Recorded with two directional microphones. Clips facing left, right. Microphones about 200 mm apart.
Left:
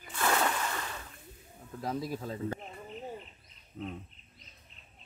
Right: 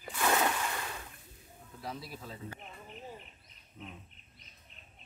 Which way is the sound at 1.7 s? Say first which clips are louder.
Left 8 dB; 45° left (ahead or behind).